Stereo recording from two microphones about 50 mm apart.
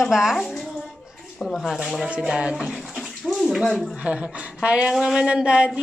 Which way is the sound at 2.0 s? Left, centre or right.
Right.